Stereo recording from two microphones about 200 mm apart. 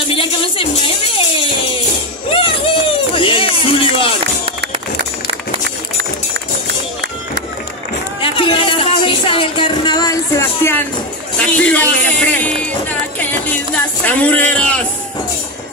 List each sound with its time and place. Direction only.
0.1 s music: 25° left (ahead or behind)
2.3 s a sound: 25° left (ahead or behind)
3.2 s music: 25° left (ahead or behind)
8.2 s music: 25° left (ahead or behind)
11.3 s a sound: 5° left (ahead or behind)
14.0 s music: 5° left (ahead or behind)